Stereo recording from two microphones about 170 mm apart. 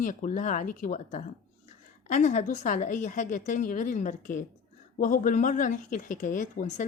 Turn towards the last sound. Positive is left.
turn(degrees=45)  # may be behind; listen again after turning